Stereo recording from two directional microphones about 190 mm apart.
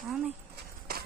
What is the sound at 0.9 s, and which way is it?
Run, 50° right (ahead or behind).